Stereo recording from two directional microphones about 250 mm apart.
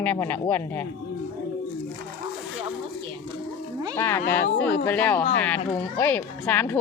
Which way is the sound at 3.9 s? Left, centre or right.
Centre.